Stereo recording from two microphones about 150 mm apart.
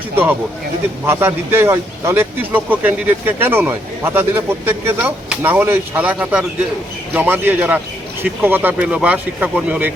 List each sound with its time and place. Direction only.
1.0 s speech: 15° right (ahead or behind)